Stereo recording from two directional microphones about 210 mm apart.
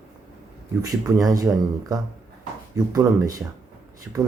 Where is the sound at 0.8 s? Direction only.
15° right (ahead or behind).